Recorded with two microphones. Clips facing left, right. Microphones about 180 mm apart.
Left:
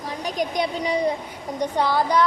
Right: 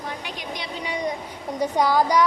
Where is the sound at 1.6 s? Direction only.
10° right (ahead or behind).